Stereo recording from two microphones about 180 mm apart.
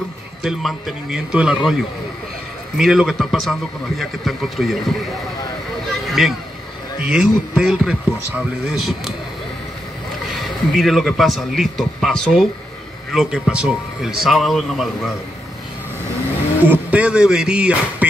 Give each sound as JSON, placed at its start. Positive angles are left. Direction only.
{"t": 0.4, "sound": "a man's voice", "side_deg": 0}
{"t": 2.8, "sound": "a man's voice", "side_deg": 0}
{"t": 6.0, "sound": "a sound", "side_deg": 0}
{"t": 7.1, "sound": "a man's voice", "side_deg": -5}
{"t": 10.3, "sound": "a man's voice", "side_deg": 0}
{"t": 16.6, "sound": "a man's voice", "side_deg": -10}